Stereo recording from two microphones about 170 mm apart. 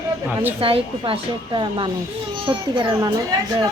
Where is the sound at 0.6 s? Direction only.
35° right (ahead or behind).